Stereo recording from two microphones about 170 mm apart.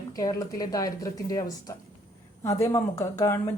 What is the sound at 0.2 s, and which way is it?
Speech, 20° left (ahead or behind).